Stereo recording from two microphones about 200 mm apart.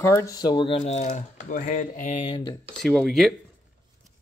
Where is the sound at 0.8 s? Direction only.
35° left (ahead or behind).